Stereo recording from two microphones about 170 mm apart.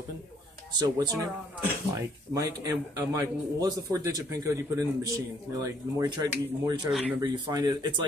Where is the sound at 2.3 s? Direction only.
20° right (ahead or behind).